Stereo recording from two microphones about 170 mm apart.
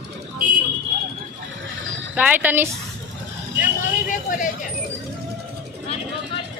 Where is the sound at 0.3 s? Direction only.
55° right (ahead or behind).